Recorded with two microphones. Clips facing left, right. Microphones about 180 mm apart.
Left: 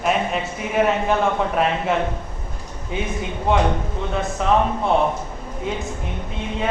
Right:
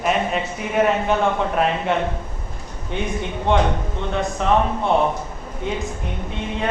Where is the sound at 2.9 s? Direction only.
5° left (ahead or behind).